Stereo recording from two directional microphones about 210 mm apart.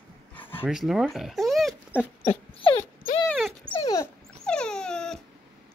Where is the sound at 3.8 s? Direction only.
15° left (ahead or behind).